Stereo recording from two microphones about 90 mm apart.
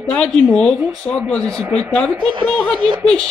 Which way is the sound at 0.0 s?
10° left (ahead or behind).